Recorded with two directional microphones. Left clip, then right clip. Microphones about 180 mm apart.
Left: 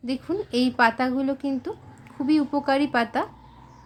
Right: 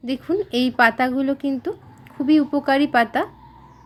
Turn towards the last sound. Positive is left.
turn(degrees=-10)  # may be behind; listen again after turning